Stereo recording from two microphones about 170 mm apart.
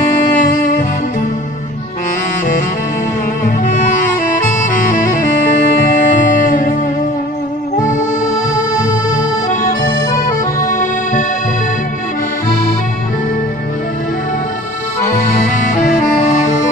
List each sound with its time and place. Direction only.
0.0 s music: 50° left (ahead or behind)
3.4 s music: 50° left (ahead or behind)
4.6 s saxophone: 50° left (ahead or behind)
5.7 s music: 50° left (ahead or behind)
8.8 s accordion: 50° left (ahead or behind)
15.0 s music: 50° left (ahead or behind)